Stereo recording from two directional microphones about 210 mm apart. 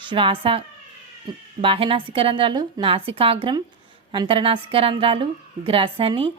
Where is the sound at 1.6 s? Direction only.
25° right (ahead or behind).